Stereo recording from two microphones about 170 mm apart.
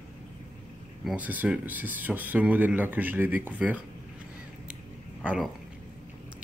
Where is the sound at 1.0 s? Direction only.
10° right (ahead or behind).